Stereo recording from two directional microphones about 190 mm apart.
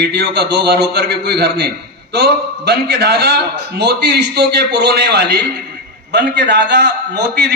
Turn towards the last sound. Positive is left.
turn(degrees=-60)  # may be behind; listen again after turning